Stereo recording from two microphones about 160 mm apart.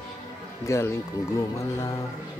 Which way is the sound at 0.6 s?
15° left (ahead or behind).